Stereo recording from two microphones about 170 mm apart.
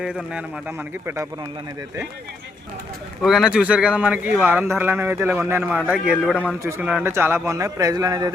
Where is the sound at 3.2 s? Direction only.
5° right (ahead or behind).